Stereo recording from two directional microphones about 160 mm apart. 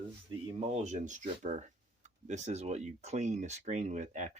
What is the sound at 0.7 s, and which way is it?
Speech, 45° right (ahead or behind).